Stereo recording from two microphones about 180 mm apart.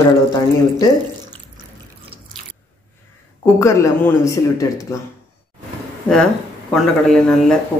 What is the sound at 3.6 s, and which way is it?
Speech, 15° left (ahead or behind).